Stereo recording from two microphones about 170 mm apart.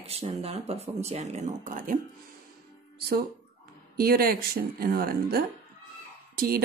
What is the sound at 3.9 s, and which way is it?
Speech, 65° right (ahead or behind).